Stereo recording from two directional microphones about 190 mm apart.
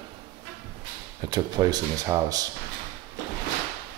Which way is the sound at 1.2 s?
20° right (ahead or behind).